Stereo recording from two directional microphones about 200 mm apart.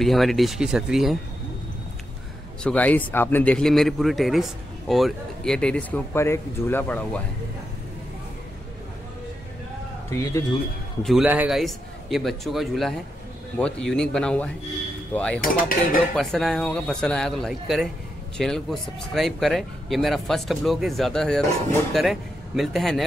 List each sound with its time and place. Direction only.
0.0 s speech: centre (ahead or behind)
2.6 s speech: 5° left (ahead or behind)
10.0 s speech: 15° left (ahead or behind)
11.0 s speech: centre (ahead or behind)
15.4 s speech: 45° left (ahead or behind)
16.2 s speech: centre (ahead or behind)